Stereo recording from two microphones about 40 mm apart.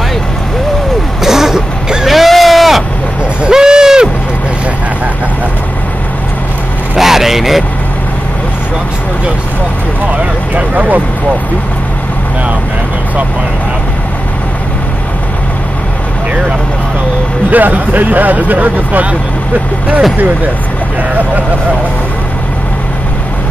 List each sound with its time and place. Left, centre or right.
1.2 s throat clearing: centre
2.0 s a sound: centre
3.4 s owl: centre
7.0 s vehicle: centre
10.5 s vehicle: right
17.5 s speech: right